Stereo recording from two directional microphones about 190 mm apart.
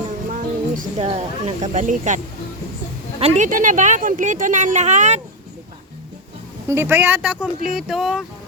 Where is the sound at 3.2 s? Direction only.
35° right (ahead or behind).